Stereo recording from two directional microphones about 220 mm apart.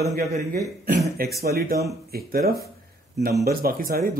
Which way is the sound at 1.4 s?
45° right (ahead or behind).